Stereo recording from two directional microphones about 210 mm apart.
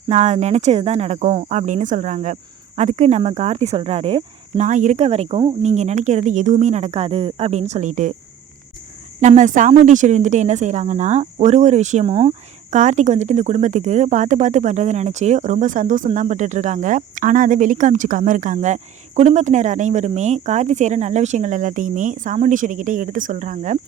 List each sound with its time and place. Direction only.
0.1 s speech: 35° right (ahead or behind)
9.2 s speech: 35° right (ahead or behind)